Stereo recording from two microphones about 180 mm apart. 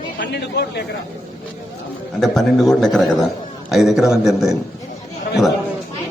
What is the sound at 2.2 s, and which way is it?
A man's voice, centre (ahead or behind).